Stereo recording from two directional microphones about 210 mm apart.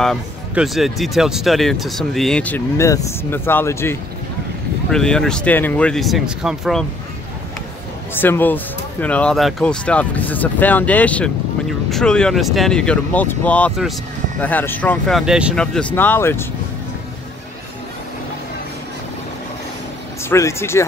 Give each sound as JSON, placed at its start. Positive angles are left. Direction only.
{"t": 0.0, "sound": "speech", "side_deg": 0}
{"t": 8.1, "sound": "speech", "side_deg": 10}
{"t": 20.2, "sound": "speech", "side_deg": 15}